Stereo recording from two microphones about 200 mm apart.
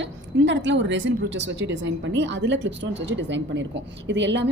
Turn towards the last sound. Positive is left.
turn(degrees=-60)  # may be behind; listen again after turning